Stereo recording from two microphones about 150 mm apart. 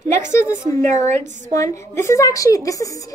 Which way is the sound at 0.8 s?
50° right (ahead or behind).